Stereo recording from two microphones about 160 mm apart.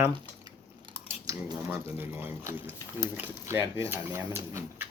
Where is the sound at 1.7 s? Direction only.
15° right (ahead or behind).